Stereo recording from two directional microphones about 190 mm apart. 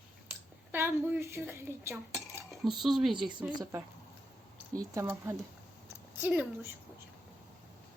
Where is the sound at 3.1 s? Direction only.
25° right (ahead or behind); by 6.7 s 10° right (ahead or behind).